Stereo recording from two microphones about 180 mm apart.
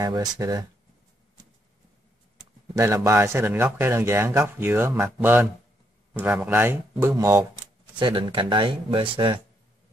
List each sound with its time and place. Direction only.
0.0 s speech: 20° right (ahead or behind)
2.7 s speech: 15° right (ahead or behind)